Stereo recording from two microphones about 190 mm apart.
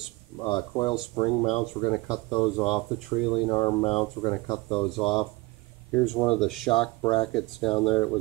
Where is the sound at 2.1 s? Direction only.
15° left (ahead or behind).